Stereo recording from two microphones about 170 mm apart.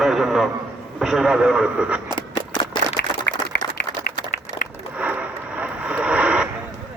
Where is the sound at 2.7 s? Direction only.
30° left (ahead or behind).